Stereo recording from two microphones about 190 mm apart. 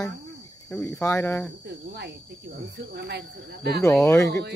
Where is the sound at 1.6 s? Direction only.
60° right (ahead or behind).